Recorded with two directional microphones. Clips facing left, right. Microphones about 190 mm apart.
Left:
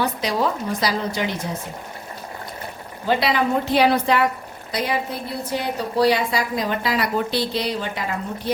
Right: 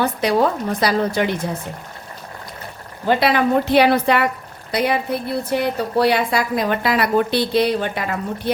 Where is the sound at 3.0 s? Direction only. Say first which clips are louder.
Right 3 dB; 60° right (ahead or behind).